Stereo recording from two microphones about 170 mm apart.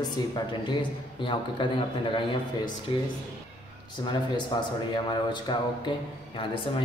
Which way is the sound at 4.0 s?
25° left (ahead or behind).